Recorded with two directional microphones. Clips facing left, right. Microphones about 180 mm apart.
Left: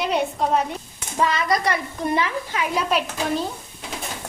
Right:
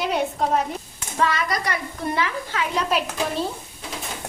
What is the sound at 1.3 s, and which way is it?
A woman's voice, 25° left (ahead or behind).